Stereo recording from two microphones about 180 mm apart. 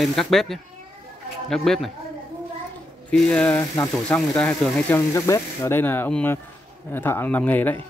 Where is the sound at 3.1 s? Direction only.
5° left (ahead or behind).